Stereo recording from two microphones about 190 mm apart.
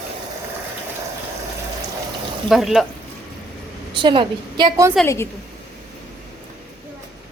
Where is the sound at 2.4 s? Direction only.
Centre (ahead or behind).